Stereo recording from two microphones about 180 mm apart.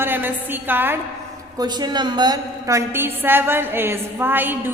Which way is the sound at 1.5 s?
25° right (ahead or behind).